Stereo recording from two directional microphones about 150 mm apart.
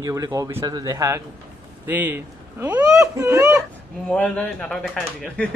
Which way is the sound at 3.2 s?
20° right (ahead or behind).